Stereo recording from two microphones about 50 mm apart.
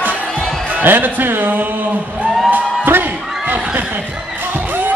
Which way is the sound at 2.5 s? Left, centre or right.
Right.